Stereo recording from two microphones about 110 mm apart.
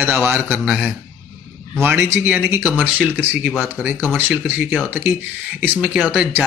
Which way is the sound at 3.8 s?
20° right (ahead or behind).